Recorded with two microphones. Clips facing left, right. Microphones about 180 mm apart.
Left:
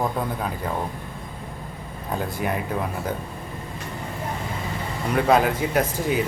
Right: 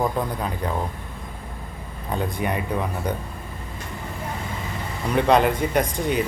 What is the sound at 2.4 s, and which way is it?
Speech, centre (ahead or behind).